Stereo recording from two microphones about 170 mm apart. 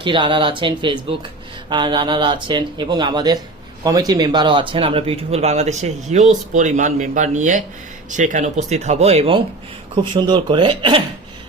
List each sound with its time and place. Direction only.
0.0 s speech: 30° right (ahead or behind)